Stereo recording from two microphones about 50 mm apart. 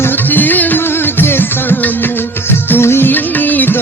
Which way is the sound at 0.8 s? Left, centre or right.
Left.